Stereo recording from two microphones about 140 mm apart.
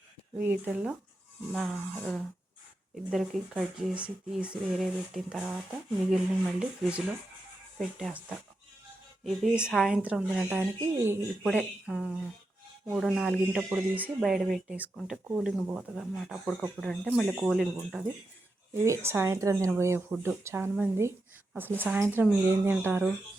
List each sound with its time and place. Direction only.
0.4 s speech: 10° right (ahead or behind)
18.7 s speech: 20° right (ahead or behind)